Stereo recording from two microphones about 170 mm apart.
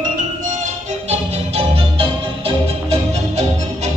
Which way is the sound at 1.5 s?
35° right (ahead or behind).